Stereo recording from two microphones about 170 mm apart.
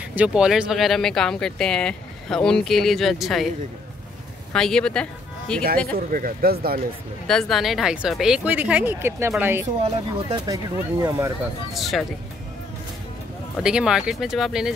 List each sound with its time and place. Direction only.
0.1 s speech: 5° right (ahead or behind)
5.9 s speech: 60° right (ahead or behind)
7.2 s speech: centre (ahead or behind); by 9.7 s 15° right (ahead or behind)
9.8 s speech: 30° right (ahead or behind)
11.7 s speech: centre (ahead or behind)
13.6 s speech: 5° right (ahead or behind)